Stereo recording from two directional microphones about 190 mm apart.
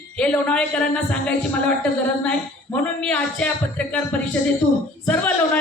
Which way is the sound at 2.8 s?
5° left (ahead or behind).